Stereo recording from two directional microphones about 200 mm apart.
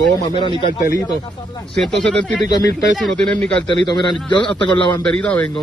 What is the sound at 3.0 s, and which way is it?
Speech, centre (ahead or behind).